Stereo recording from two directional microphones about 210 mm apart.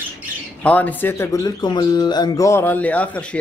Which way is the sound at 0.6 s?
5° left (ahead or behind).